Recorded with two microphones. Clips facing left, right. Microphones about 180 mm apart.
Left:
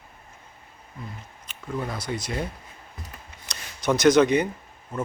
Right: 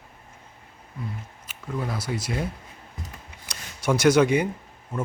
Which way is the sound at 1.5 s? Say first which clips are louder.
Even; 5° right (ahead or behind).